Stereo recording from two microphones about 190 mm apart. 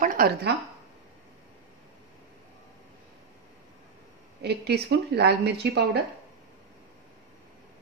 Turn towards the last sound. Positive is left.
turn(degrees=-60)  # may be behind; listen again after turning